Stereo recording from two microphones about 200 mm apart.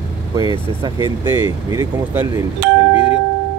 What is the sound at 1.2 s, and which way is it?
Speech, 10° right (ahead or behind).